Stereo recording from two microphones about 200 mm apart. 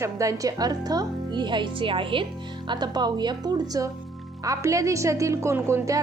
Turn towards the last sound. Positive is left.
turn(degrees=-15)  # may be behind; listen again after turning